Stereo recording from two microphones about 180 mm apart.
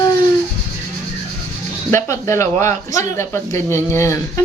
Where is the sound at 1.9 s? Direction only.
15° left (ahead or behind).